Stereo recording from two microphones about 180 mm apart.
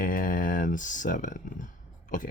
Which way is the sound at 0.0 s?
50° left (ahead or behind).